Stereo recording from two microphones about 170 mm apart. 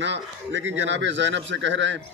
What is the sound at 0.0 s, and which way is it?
Speech, 90° right.